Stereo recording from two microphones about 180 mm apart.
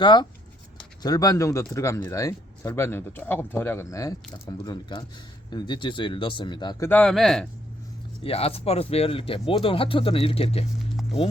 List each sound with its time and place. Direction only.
0.0 s speech: 25° left (ahead or behind); by 7.4 s centre (ahead or behind)
8.2 s speech: 30° left (ahead or behind)